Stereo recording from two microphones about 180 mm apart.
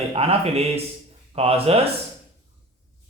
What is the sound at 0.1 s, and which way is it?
Speech, 35° right (ahead or behind).